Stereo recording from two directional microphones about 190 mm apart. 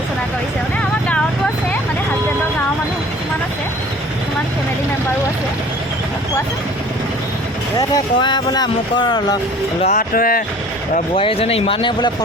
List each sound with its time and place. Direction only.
0.8 s vehicle: 5° left (ahead or behind)
7.8 s speech: 20° left (ahead or behind)
9.8 s speech: 45° left (ahead or behind)
11.1 s speech: 30° left (ahead or behind)